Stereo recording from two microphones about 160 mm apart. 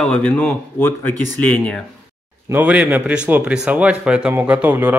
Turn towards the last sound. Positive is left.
turn(degrees=-10)  # may be behind; listen again after turning